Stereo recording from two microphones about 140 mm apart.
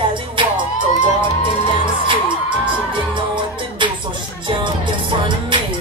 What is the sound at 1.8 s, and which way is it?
Music, 35° right (ahead or behind).